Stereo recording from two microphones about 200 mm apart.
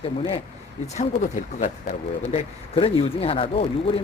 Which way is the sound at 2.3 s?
30° left (ahead or behind).